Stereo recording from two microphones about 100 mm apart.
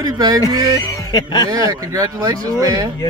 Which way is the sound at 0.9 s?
40° left (ahead or behind).